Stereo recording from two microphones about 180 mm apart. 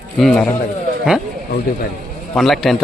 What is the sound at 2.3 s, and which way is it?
Speech, centre (ahead or behind).